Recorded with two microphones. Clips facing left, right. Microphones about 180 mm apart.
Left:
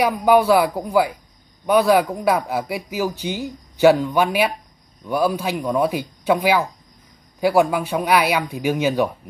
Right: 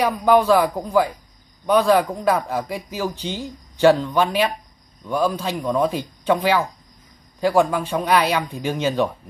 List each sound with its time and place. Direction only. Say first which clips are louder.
0.0 s speech: left 1 dB; 10° left (ahead or behind)